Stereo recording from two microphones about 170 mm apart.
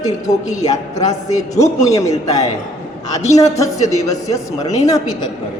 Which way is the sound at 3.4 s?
20° left (ahead or behind).